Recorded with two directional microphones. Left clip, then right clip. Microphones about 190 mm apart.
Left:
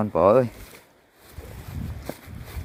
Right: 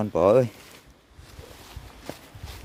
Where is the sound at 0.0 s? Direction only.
30° right (ahead or behind).